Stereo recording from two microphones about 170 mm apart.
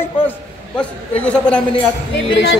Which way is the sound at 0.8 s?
5° left (ahead or behind).